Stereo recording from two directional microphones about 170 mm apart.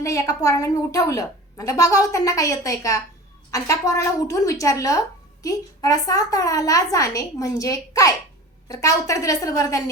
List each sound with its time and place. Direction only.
0.0 s a woman's voice: 20° left (ahead or behind)